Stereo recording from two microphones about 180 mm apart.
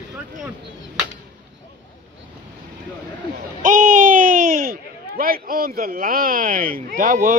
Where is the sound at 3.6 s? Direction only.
45° right (ahead or behind).